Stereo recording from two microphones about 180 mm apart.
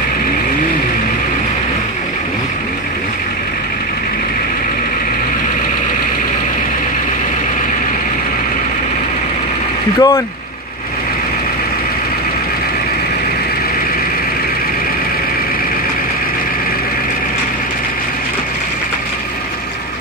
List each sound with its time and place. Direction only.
9.9 s speech: 20° left (ahead or behind)